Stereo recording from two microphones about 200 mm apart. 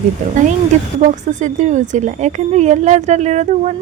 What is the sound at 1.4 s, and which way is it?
A woman's voice, 35° right (ahead or behind).